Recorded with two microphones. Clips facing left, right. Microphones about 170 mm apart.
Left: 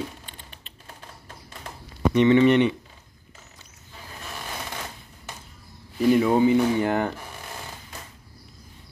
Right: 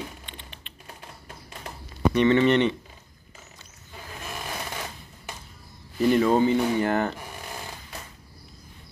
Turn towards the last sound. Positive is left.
turn(degrees=15)  # may be behind; listen again after turning